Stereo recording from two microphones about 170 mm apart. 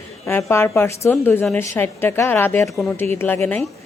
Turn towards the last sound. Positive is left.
turn(degrees=10)  # may be behind; listen again after turning